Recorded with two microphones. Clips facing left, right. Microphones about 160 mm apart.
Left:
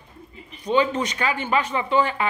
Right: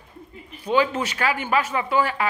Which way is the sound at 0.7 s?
5° right (ahead or behind).